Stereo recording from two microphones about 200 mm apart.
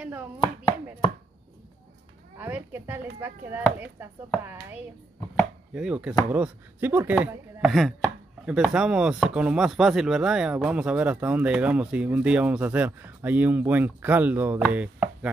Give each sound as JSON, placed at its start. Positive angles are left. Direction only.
{"t": 0.0, "sound": "chopping", "side_deg": -10}
{"t": 2.3, "sound": "a woman's voice", "side_deg": -10}
{"t": 5.8, "sound": "chopping", "side_deg": -5}
{"t": 6.3, "sound": "speech", "side_deg": -10}
{"t": 14.7, "sound": "chopping", "side_deg": -5}